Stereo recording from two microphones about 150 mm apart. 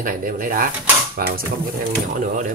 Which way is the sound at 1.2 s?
90° right.